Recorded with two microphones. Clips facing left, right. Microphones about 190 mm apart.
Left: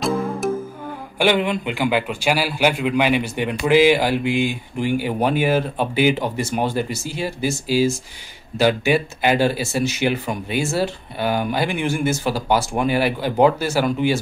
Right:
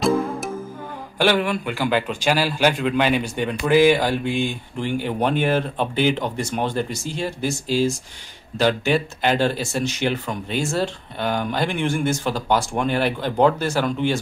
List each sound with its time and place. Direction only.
0.0 s music: centre (ahead or behind)
1.1 s a man's voice: 15° left (ahead or behind)